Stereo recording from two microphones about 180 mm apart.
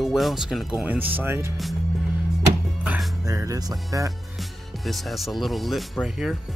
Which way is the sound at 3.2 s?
20° right (ahead or behind).